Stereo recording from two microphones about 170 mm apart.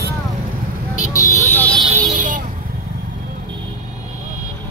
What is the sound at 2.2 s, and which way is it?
Vehicle, 50° right (ahead or behind).